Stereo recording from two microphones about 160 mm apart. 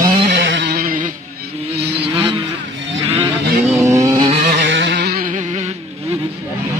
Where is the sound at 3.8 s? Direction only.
20° right (ahead or behind).